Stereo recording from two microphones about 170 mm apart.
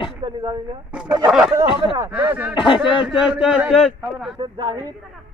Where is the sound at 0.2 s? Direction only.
25° right (ahead or behind).